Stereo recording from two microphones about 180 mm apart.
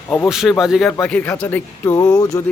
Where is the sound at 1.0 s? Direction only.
10° left (ahead or behind).